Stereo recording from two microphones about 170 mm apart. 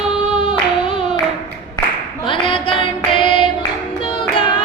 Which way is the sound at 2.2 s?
30° left (ahead or behind).